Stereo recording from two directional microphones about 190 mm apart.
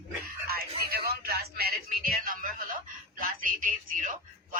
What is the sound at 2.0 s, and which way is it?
A man's voice, 50° right (ahead or behind).